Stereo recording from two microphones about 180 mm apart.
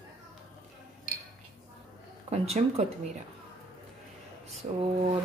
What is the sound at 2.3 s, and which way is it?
Speech, 35° right (ahead or behind).